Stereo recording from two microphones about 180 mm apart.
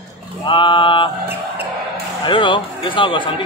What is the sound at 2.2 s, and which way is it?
Speech, 25° left (ahead or behind).